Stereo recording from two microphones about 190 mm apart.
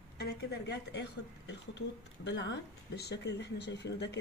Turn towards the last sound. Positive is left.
turn(degrees=65)  # may be behind; listen again after turning